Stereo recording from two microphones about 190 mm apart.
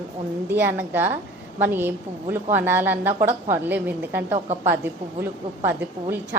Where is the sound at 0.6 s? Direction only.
10° right (ahead or behind).